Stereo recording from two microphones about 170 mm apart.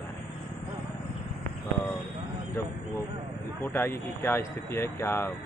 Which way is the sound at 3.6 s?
15° left (ahead or behind).